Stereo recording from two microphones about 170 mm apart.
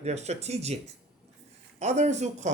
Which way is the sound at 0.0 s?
40° right (ahead or behind).